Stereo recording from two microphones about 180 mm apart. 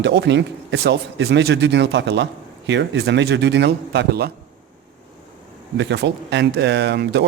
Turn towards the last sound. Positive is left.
turn(degrees=-70)  # may be behind; listen again after turning